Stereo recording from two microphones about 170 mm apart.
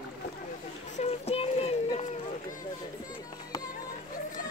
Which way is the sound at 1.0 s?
35° left (ahead or behind).